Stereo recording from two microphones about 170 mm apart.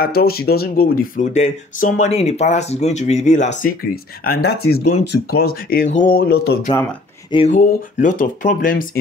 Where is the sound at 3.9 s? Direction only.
65° left (ahead or behind).